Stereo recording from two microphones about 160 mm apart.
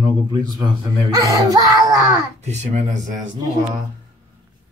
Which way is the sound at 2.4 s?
45° right (ahead or behind).